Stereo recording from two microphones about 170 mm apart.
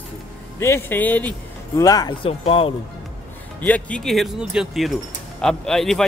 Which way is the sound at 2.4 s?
35° left (ahead or behind).